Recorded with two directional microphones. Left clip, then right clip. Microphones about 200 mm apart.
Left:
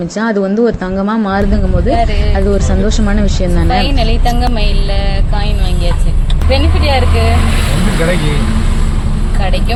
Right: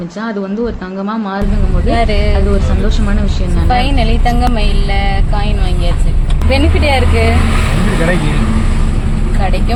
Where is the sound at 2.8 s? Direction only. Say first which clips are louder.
Left 4 dB; 30° left (ahead or behind).